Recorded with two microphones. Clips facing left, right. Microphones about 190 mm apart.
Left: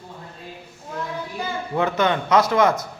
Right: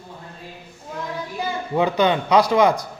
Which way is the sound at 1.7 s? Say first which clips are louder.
Right 2 dB; 15° right (ahead or behind).